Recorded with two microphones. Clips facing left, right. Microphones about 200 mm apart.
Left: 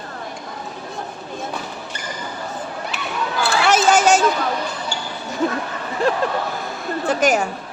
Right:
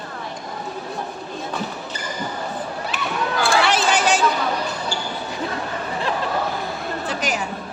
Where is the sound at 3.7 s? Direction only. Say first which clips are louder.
Left 4 dB; 45° left (ahead or behind).